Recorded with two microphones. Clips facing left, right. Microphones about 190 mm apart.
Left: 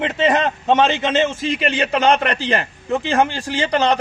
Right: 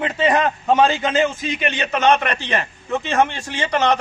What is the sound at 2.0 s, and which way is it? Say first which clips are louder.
Speech: right 1 dB; 35° left (ahead or behind).